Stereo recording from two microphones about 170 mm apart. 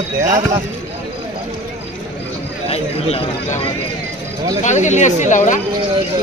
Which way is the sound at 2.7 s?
35° left (ahead or behind).